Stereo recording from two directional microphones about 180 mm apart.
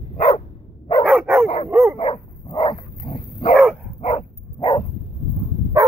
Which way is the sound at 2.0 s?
25° left (ahead or behind).